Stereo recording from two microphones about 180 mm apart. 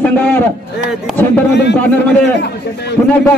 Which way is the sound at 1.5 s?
70° left (ahead or behind).